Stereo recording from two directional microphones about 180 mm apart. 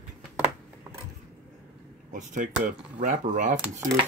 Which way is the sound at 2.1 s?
45° right (ahead or behind).